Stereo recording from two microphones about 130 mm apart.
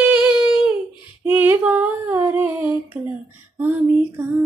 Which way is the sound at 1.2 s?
15° right (ahead or behind).